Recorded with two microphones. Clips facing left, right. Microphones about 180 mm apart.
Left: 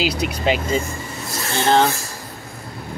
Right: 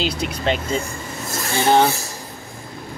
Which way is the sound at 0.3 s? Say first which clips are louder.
Left 2 dB; 5° left (ahead or behind).